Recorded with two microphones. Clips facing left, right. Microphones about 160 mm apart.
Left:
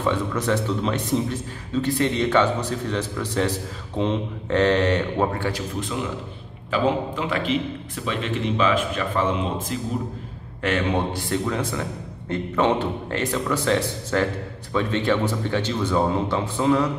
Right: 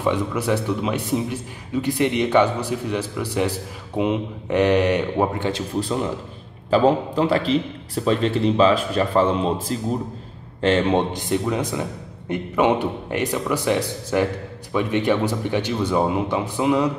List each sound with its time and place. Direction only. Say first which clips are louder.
0.0 s a man's voice: right 1 dB; 10° right (ahead or behind)
6.7 s a man's voice: right 5 dB; 35° right (ahead or behind); by 16.9 s 15° right (ahead or behind)